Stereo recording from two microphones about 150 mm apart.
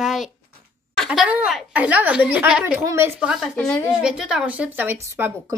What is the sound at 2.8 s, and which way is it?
Speech, 15° right (ahead or behind).